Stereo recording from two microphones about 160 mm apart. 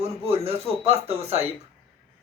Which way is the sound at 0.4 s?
40° right (ahead or behind).